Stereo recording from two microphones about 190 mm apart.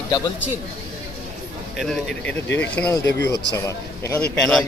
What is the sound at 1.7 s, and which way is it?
A man's voice, centre (ahead or behind).